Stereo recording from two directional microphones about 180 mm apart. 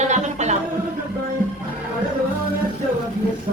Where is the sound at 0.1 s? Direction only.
40° right (ahead or behind).